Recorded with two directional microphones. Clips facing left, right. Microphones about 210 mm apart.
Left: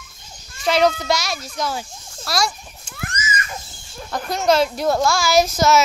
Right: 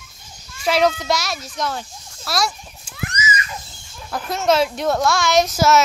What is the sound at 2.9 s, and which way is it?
Splash, 50° left (ahead or behind).